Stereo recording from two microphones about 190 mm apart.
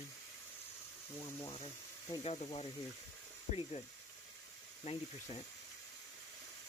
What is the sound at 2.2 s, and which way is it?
Speech, 35° left (ahead or behind).